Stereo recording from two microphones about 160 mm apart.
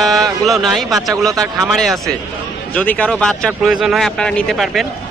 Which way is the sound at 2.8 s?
10° left (ahead or behind).